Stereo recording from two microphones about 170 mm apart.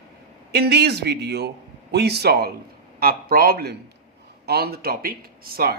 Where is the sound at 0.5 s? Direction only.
75° right (ahead or behind).